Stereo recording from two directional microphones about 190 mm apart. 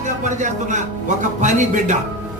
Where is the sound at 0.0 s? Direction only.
40° right (ahead or behind).